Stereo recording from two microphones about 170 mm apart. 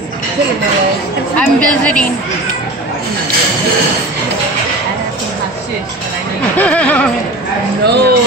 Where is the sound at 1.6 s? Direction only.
5° left (ahead or behind).